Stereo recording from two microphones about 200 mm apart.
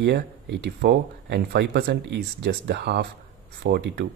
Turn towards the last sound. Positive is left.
turn(degrees=-55)  # may be behind; listen again after turning